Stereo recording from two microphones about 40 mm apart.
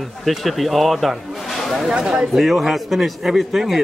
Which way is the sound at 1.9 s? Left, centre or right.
Centre.